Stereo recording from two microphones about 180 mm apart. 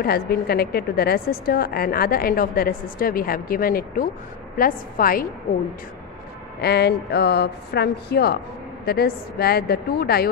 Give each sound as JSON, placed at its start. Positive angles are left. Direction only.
{"t": 0.5, "sound": "a woman's voice", "side_deg": 60}
{"t": 6.6, "sound": "a woman's voice", "side_deg": 65}